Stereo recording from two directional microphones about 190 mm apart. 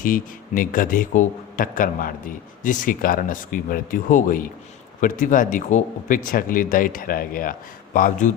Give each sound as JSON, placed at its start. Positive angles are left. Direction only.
{"t": 0.0, "sound": "speech", "side_deg": 45}